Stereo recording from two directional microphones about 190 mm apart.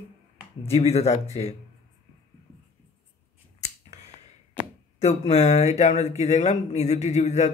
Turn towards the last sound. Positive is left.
turn(degrees=35)  # may be behind; listen again after turning